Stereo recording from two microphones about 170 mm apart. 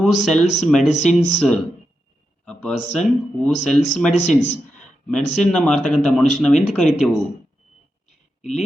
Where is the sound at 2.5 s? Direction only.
5° left (ahead or behind).